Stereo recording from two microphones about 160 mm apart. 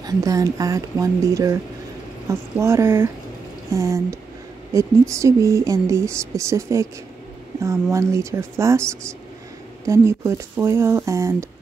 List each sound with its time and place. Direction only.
0.0 s speech: 20° right (ahead or behind)
9.8 s speech: 20° right (ahead or behind)